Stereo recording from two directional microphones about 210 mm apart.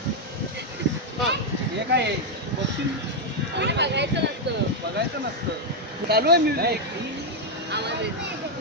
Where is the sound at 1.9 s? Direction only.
55° right (ahead or behind).